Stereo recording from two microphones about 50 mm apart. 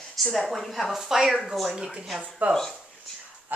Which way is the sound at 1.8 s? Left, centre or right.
Centre.